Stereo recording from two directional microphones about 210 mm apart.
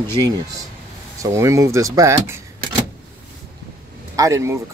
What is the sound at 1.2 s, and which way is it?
Speech, 15° right (ahead or behind).